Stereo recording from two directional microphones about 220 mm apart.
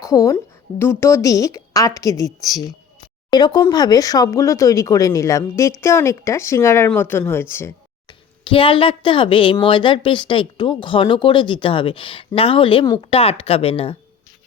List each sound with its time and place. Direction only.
0.0 s a woman's voice: 15° left (ahead or behind)
8.4 s a woman's voice: 25° left (ahead or behind)